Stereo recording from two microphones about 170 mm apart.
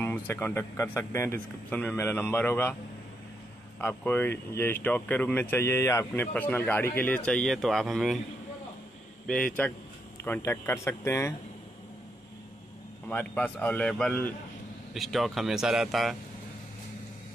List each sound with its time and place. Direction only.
0.0 s speech: 15° left (ahead or behind)
3.8 s speech: 10° left (ahead or behind)
9.3 s speech: 5° left (ahead or behind)
13.1 s speech: 10° left (ahead or behind)